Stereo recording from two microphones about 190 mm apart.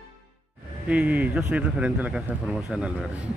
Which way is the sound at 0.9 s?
10° right (ahead or behind).